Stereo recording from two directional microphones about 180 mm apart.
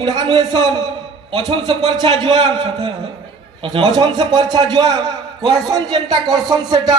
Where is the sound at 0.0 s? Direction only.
25° right (ahead or behind).